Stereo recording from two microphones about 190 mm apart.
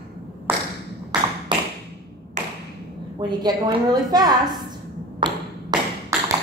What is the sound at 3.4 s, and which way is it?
A woman's voice, 20° right (ahead or behind).